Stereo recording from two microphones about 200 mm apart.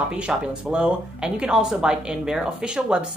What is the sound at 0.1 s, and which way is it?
Speech, 5° right (ahead or behind).